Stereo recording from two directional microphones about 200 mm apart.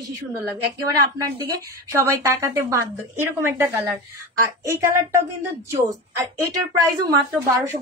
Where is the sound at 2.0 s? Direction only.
15° right (ahead or behind).